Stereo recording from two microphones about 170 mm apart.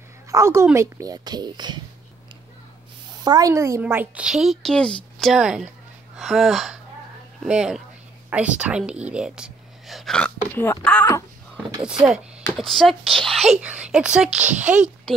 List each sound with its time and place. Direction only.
0.3 s a woman's voice: 15° right (ahead or behind)
3.3 s a woman's voice: 20° right (ahead or behind); by 11.1 s 10° left (ahead or behind)
12.5 s a woman's voice: centre (ahead or behind)